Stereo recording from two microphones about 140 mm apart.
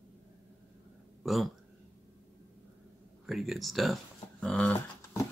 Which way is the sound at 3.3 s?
Centre (ahead or behind).